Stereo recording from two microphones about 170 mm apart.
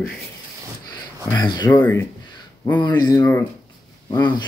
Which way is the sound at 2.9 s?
25° left (ahead or behind).